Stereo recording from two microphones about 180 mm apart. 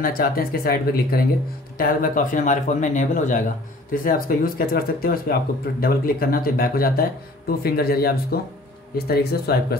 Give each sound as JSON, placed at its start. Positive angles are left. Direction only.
{"t": 0.0, "sound": "speech", "side_deg": 55}